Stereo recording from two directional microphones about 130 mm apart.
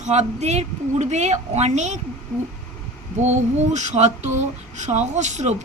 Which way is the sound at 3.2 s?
65° right (ahead or behind).